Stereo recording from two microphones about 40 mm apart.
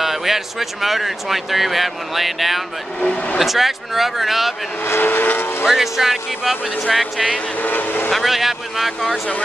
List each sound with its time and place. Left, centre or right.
0.0 s speech: centre
4.8 s speech: left
5.7 s speech: centre
7.6 s speech: left
8.1 s speech: centre